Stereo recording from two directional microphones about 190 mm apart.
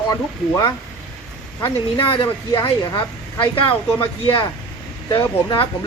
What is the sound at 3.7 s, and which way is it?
Speech, 10° left (ahead or behind).